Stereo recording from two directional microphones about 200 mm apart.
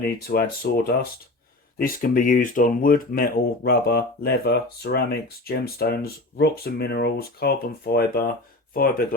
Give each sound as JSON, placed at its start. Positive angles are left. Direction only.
{"t": 0.0, "sound": "speech", "side_deg": 50}
{"t": 1.8, "sound": "speech", "side_deg": 45}